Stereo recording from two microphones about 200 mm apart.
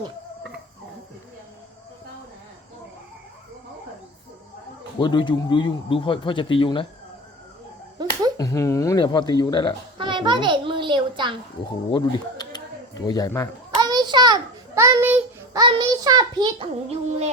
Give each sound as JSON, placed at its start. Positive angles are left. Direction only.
{"t": 4.9, "sound": "speech", "side_deg": 25}
{"t": 8.0, "sound": "finger snapping", "side_deg": -20}
{"t": 8.4, "sound": "speech", "side_deg": 15}
{"t": 10.0, "sound": "a child's voice", "side_deg": -25}
{"t": 11.9, "sound": "a sound", "side_deg": 20}
{"t": 13.7, "sound": "a sound", "side_deg": -20}
{"t": 17.1, "sound": "music", "side_deg": -35}